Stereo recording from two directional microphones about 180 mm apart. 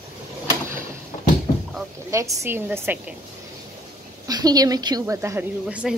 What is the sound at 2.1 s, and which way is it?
A woman's voice, 15° right (ahead or behind).